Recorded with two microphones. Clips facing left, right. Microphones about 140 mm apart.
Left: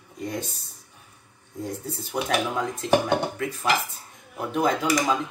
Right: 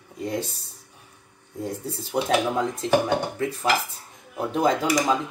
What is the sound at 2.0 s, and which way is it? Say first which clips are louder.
Speech: right 3 dB; 25° right (ahead or behind).